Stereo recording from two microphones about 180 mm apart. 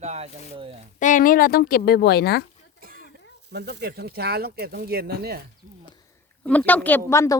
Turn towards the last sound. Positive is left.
turn(degrees=15)  # may be behind; listen again after turning